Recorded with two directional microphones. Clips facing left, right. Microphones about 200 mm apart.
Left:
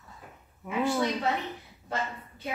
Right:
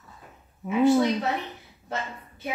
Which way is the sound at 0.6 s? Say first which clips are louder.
Right 8 dB; 25° right (ahead or behind).